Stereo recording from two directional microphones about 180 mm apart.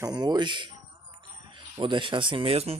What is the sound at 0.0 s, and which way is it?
Speech, 20° right (ahead or behind).